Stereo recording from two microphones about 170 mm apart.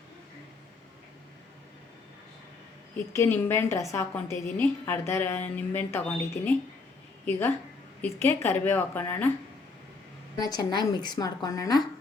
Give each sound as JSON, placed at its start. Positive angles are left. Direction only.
{"t": 3.1, "sound": "a woman's voice", "side_deg": 15}
{"t": 10.4, "sound": "a woman's voice", "side_deg": 25}